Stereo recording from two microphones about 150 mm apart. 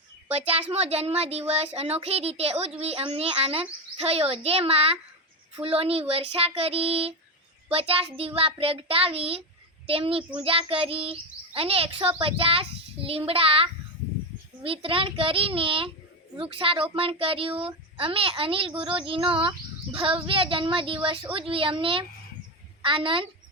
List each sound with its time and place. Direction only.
0.7 s a child's voice: 45° right (ahead or behind)